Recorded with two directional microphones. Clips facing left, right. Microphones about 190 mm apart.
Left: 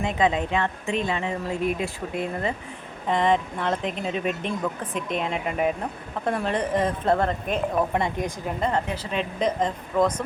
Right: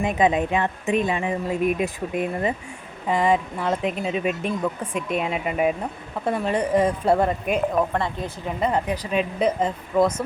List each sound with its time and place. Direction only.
0.0 s a woman's voice: 15° right (ahead or behind)
7.9 s speech: 15° left (ahead or behind)
8.6 s a woman's voice: 10° right (ahead or behind)